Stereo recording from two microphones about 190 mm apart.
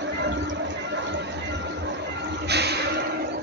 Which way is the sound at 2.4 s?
60° right (ahead or behind).